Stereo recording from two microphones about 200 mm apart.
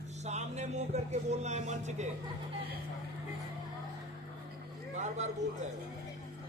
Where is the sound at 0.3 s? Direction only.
35° right (ahead or behind).